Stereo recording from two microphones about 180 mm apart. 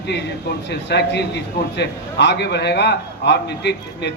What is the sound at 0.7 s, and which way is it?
A man's voice, 70° left (ahead or behind).